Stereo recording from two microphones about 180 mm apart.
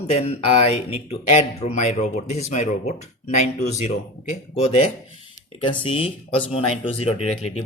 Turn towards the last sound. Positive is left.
turn(degrees=35)  # may be behind; listen again after turning